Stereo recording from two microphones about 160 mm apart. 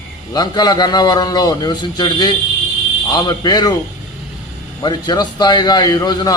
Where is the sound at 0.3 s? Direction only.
25° left (ahead or behind).